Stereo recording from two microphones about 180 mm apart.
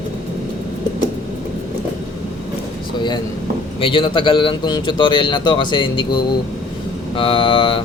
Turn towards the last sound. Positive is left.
turn(degrees=30)  # may be behind; listen again after turning